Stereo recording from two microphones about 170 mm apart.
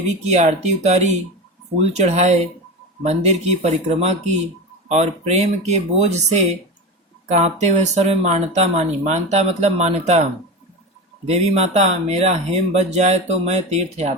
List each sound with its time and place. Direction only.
0.3 s speech: 45° right (ahead or behind)
11.3 s speech: 40° right (ahead or behind)